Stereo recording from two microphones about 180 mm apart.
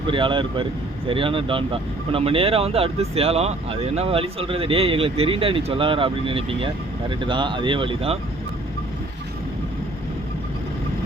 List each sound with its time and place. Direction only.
0.1 s speech: 30° right (ahead or behind)